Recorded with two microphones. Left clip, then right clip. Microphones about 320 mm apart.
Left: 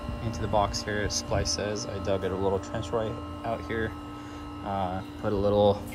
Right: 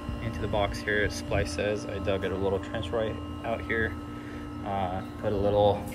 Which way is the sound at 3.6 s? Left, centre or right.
Left.